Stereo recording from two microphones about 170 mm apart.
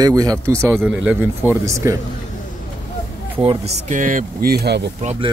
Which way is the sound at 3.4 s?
40° right (ahead or behind).